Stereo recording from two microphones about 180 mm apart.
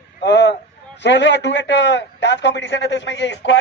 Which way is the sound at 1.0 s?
75° left (ahead or behind).